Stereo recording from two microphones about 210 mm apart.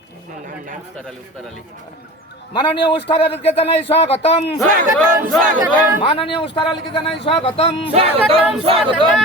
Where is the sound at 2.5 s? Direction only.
20° left (ahead or behind).